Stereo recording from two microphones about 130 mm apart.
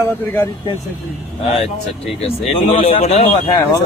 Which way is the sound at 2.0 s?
50° left (ahead or behind).